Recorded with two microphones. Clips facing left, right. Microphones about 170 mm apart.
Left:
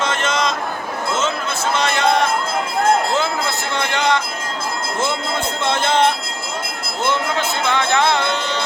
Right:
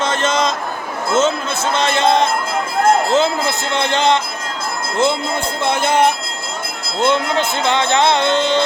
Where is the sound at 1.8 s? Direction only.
30° right (ahead or behind).